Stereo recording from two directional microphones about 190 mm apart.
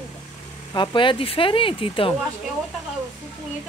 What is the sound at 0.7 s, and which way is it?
Speech, 25° left (ahead or behind).